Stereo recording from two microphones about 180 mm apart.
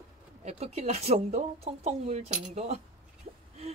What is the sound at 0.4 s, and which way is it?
Speech, 35° right (ahead or behind).